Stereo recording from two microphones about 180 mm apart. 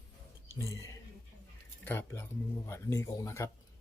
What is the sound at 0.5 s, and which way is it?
Speech, 15° left (ahead or behind).